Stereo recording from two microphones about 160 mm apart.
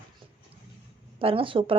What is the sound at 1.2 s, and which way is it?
Speech, 35° right (ahead or behind).